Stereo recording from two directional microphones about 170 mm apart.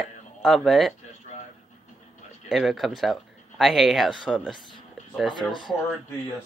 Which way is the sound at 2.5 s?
Centre (ahead or behind).